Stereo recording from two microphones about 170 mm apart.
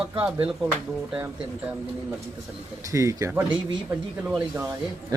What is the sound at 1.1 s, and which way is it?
Speech, 10° right (ahead or behind).